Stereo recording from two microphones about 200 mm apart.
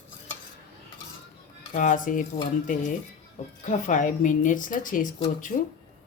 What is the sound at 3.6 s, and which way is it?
Speech, 40° left (ahead or behind).